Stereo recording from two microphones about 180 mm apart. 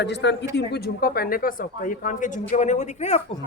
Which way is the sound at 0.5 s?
65° left (ahead or behind).